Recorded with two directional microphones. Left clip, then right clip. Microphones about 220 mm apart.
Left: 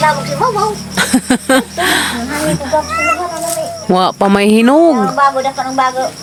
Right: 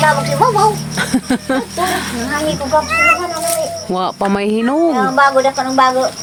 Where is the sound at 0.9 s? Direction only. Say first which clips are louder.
Left 4 dB; 20° left (ahead or behind).